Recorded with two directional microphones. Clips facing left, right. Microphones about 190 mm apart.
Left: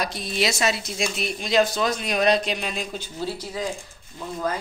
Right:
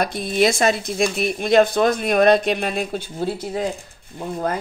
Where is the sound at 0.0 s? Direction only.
55° right (ahead or behind).